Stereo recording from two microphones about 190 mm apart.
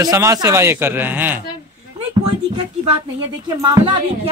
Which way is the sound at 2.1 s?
30° right (ahead or behind).